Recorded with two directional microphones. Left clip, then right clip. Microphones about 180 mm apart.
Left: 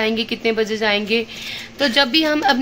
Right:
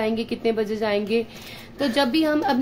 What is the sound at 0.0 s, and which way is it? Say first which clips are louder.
A woman's voice: left 4 dB; 5° right (ahead or behind).